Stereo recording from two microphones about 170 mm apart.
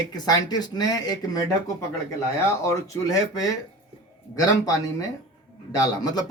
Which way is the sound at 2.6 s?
20° left (ahead or behind).